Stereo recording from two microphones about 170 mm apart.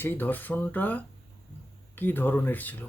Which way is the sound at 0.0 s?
10° left (ahead or behind).